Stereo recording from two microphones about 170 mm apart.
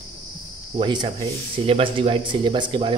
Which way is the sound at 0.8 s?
25° right (ahead or behind).